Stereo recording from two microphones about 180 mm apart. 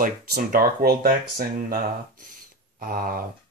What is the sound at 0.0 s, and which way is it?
Speech, 50° right (ahead or behind).